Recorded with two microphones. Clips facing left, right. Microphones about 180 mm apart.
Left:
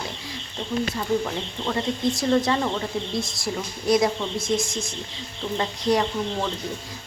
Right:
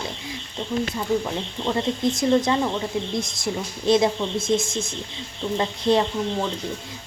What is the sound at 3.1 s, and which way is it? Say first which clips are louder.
Speech: right 1 dB; 20° right (ahead or behind).